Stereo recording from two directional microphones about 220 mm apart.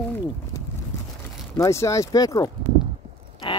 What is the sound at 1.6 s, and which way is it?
Speech, 15° left (ahead or behind).